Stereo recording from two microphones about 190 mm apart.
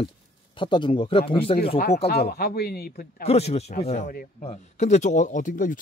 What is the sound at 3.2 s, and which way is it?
Speech, 35° left (ahead or behind).